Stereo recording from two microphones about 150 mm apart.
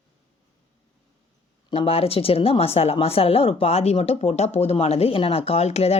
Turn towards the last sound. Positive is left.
turn(degrees=45)  # may be behind; listen again after turning